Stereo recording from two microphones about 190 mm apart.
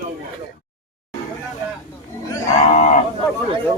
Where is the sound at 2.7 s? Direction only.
40° left (ahead or behind).